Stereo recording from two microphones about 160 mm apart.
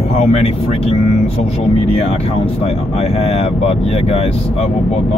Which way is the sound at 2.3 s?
40° left (ahead or behind).